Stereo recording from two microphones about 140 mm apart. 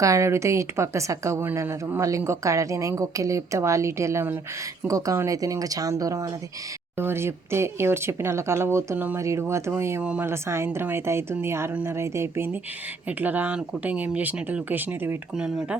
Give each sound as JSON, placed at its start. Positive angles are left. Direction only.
{"t": 0.0, "sound": "speech", "side_deg": -20}